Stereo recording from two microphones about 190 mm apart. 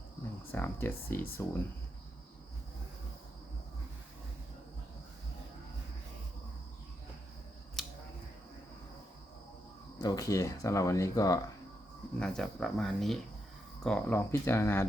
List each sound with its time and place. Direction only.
0.5 s speech: 10° left (ahead or behind)
7.8 s scissors: centre (ahead or behind)
10.0 s speech: 20° left (ahead or behind)
12.2 s speech: 5° left (ahead or behind)